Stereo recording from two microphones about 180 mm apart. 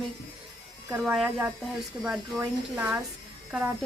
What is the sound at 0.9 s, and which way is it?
Speech, 5° right (ahead or behind).